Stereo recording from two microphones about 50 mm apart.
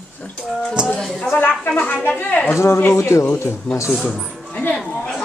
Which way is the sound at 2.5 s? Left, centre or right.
Left.